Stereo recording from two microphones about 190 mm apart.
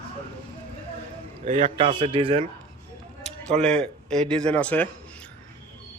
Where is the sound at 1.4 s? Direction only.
40° right (ahead or behind).